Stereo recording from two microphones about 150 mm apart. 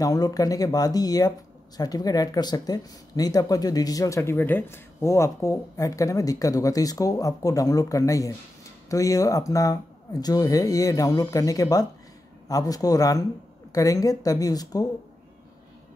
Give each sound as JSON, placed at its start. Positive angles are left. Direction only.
{"t": 0.0, "sound": "speech", "side_deg": 25}